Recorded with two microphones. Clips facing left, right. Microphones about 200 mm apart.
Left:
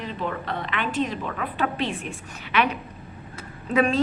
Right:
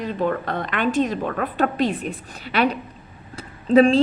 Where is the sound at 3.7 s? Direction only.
30° right (ahead or behind).